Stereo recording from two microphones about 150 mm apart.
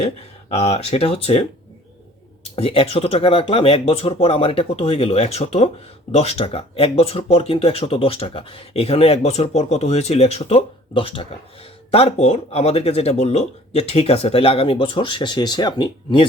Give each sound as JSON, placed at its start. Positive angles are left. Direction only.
{"t": 0.5, "sound": "speech", "side_deg": 45}